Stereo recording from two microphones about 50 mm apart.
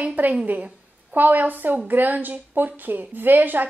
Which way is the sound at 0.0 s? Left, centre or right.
Right.